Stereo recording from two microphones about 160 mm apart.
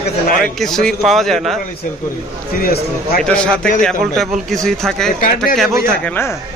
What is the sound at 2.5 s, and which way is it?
Speech, 65° left (ahead or behind).